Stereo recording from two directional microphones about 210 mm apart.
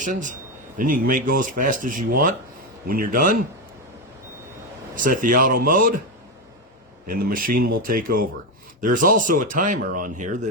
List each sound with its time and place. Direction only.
0.0 s a man's voice: 35° right (ahead or behind)
4.9 s speech: 40° right (ahead or behind)
7.1 s speech: 45° right (ahead or behind)